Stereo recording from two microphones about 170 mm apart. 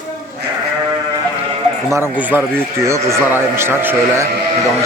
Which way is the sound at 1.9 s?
10° right (ahead or behind).